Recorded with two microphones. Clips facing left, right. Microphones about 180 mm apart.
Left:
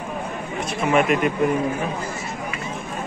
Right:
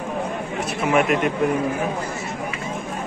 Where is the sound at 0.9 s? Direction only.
Centre (ahead or behind).